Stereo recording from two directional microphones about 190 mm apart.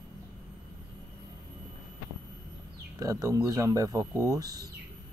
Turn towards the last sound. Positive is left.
turn(degrees=-20)  # may be behind; listen again after turning